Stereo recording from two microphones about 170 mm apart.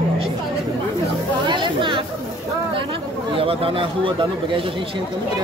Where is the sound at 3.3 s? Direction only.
35° right (ahead or behind).